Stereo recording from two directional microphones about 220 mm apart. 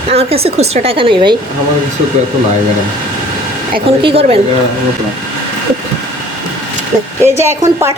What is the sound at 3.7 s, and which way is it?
Speech, 25° right (ahead or behind).